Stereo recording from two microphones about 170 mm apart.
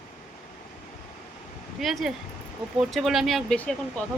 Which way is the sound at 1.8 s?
Centre (ahead or behind).